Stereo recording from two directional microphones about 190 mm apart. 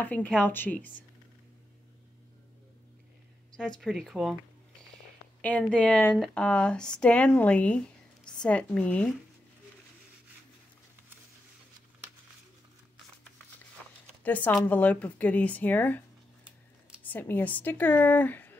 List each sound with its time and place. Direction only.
0.0 s speech: 10° left (ahead or behind)
3.5 s speech: 5° left (ahead or behind)
5.4 s speech: 10° left (ahead or behind)
14.2 s speech: 10° left (ahead or behind)
17.0 s speech: 10° left (ahead or behind)